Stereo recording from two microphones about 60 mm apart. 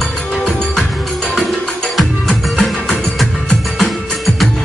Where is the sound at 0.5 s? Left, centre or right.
Centre.